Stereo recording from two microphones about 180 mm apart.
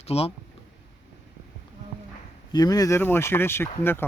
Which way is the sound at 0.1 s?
35° left (ahead or behind).